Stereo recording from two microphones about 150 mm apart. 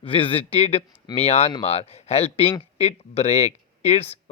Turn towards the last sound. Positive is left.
turn(degrees=45)  # may be behind; listen again after turning